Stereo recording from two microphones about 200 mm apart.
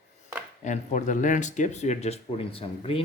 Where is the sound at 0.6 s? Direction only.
35° left (ahead or behind).